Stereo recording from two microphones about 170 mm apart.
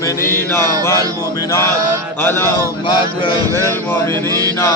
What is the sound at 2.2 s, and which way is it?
Chant, 15° left (ahead or behind).